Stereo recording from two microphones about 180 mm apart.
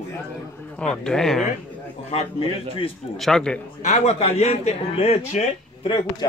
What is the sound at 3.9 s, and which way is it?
A man's voice, 35° left (ahead or behind).